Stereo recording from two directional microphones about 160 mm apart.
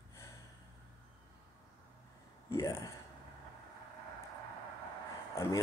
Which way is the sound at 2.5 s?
20° left (ahead or behind).